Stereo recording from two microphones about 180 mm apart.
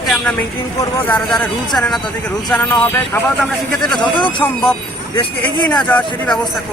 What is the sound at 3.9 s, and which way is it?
Speech, 25° left (ahead or behind).